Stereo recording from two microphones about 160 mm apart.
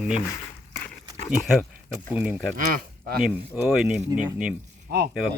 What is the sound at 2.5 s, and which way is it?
Speech, 65° right (ahead or behind).